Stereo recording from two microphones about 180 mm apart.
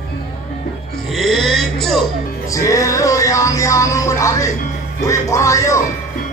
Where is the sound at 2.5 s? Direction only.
15° left (ahead or behind).